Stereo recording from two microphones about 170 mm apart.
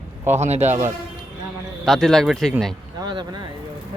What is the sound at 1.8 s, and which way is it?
Speech, centre (ahead or behind).